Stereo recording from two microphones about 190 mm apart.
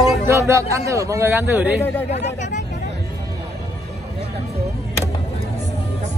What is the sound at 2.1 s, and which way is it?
Speech, 35° left (ahead or behind).